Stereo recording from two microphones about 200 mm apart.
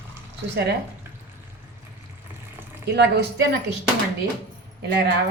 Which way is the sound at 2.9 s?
60° right (ahead or behind).